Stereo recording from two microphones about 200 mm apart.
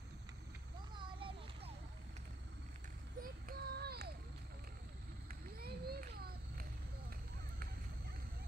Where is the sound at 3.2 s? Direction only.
50° right (ahead or behind).